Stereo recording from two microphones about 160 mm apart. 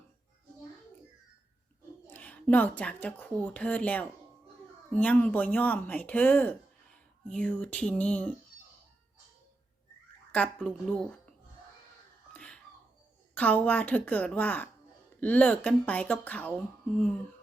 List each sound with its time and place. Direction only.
2.0 s a woman's voice: 10° left (ahead or behind)
10.3 s speech: 5° left (ahead or behind)
12.3 s a sound: 5° left (ahead or behind)
13.3 s a woman's voice: 10° left (ahead or behind)